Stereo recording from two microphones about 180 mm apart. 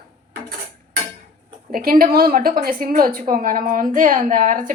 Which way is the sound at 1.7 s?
55° right (ahead or behind).